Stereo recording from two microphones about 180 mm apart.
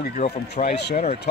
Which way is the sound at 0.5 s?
70° left (ahead or behind).